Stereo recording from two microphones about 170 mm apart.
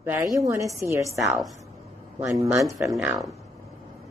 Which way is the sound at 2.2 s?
15° right (ahead or behind).